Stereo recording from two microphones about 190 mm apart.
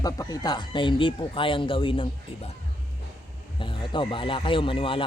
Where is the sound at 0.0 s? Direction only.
20° left (ahead or behind).